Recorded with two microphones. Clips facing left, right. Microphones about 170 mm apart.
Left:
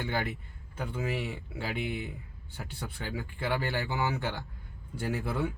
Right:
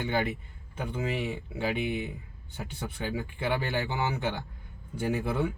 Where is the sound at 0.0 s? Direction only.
20° right (ahead or behind).